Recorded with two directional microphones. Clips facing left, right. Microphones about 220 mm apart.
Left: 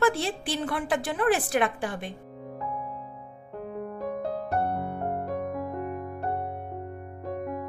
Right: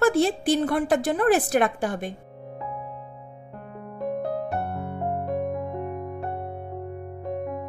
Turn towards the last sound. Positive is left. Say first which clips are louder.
# right 2 dB
turn(degrees=0)  # may be behind; listen again after turning